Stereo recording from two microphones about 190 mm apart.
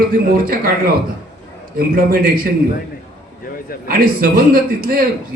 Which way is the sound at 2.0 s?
50° right (ahead or behind).